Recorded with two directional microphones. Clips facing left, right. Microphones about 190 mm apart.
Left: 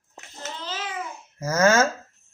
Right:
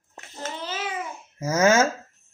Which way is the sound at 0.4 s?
10° right (ahead or behind).